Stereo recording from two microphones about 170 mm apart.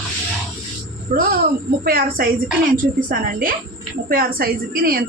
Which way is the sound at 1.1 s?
60° right (ahead or behind).